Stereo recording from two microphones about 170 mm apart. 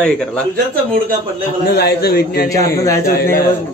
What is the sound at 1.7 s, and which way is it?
Speech, 75° left (ahead or behind).